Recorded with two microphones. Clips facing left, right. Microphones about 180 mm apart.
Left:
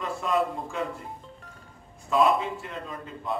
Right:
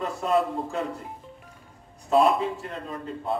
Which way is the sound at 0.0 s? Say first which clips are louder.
Right 2 dB; 40° right (ahead or behind).